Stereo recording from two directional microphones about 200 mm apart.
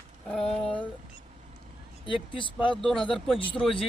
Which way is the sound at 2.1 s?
25° left (ahead or behind).